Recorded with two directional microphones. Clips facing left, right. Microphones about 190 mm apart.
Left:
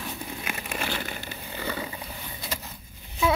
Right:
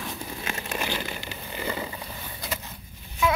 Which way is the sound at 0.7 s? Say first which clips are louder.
Right 1 dB; 15° right (ahead or behind).